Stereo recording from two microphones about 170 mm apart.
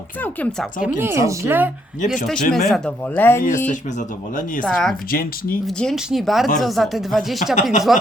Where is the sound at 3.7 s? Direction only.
50° left (ahead or behind).